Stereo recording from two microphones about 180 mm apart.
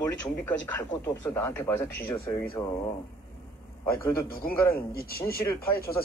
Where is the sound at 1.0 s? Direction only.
15° left (ahead or behind).